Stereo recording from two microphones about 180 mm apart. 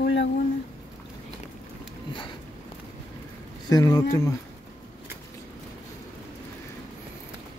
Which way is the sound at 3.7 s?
20° left (ahead or behind).